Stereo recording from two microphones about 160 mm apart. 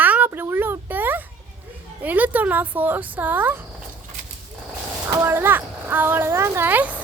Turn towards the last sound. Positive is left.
turn(degrees=-10)  # may be behind; listen again after turning